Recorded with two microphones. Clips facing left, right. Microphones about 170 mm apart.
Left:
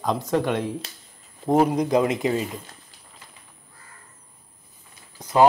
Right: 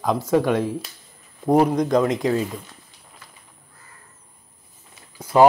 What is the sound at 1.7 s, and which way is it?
Speech, 10° left (ahead or behind).